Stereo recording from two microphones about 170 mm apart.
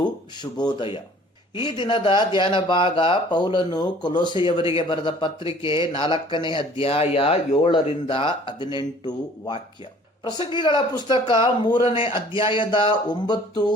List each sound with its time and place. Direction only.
0.8 s speech: 30° left (ahead or behind)